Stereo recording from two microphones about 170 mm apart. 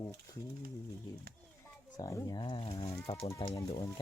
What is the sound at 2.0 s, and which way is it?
Speech, 20° left (ahead or behind).